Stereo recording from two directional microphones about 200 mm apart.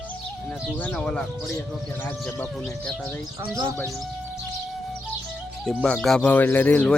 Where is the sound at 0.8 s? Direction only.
5° left (ahead or behind).